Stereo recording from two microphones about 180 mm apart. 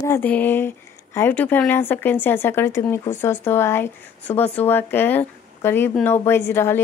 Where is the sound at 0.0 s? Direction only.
10° left (ahead or behind).